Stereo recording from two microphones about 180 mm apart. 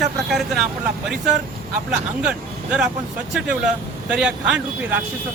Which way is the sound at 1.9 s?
5° right (ahead or behind).